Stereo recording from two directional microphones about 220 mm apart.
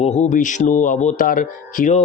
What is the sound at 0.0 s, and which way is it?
Speech, 30° left (ahead or behind).